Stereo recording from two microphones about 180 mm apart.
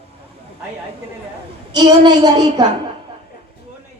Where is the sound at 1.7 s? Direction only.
25° right (ahead or behind).